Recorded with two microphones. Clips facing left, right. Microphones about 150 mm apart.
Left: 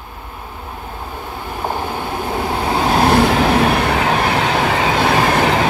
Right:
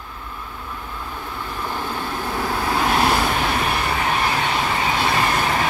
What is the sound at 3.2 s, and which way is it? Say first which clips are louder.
Train: left 8 dB; 65° left (ahead or behind).